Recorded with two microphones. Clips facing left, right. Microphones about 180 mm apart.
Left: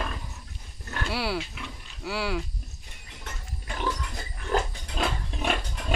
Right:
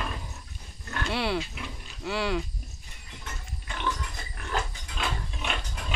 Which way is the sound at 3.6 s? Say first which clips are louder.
Left 2 dB; 40° left (ahead or behind).